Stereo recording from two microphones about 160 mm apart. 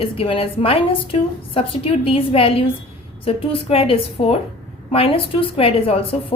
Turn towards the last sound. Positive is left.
turn(degrees=35)  # may be behind; listen again after turning